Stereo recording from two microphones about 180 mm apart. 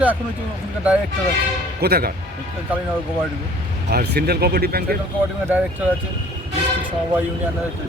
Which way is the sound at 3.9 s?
60° right (ahead or behind).